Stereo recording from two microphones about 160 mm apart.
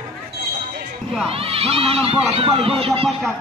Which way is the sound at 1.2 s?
35° right (ahead or behind).